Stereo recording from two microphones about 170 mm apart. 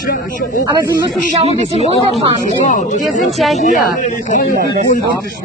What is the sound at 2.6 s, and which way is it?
Speech, 45° left (ahead or behind).